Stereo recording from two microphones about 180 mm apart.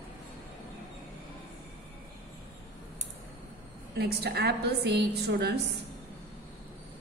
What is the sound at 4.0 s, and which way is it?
A woman's voice, 60° right (ahead or behind).